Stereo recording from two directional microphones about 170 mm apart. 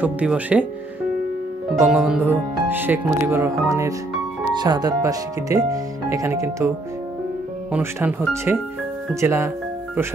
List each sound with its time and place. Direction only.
0.0 s speech: 10° right (ahead or behind)
1.8 s speech: 5° right (ahead or behind)
7.7 s speech: 10° right (ahead or behind)